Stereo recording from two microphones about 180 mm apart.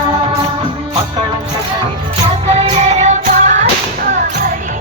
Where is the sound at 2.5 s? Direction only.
35° right (ahead or behind).